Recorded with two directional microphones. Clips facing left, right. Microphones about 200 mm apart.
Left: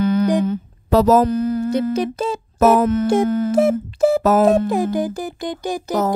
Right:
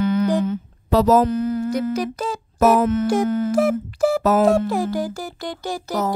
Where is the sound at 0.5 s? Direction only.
45° left (ahead or behind).